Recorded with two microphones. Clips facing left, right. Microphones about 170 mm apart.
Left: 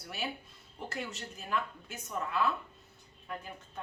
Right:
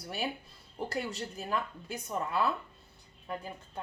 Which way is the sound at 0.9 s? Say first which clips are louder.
Right 3 dB; 35° right (ahead or behind).